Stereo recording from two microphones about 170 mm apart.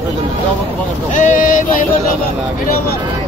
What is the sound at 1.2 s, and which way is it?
Speech, 50° left (ahead or behind).